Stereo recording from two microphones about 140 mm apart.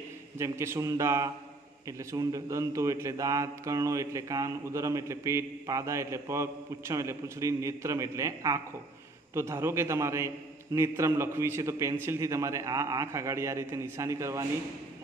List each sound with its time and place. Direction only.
0.4 s a man's voice: 20° right (ahead or behind)